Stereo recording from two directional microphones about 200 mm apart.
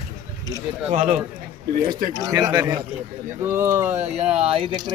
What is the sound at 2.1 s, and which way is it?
A man's voice, 20° right (ahead or behind).